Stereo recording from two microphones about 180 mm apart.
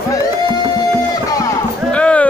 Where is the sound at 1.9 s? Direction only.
5° left (ahead or behind).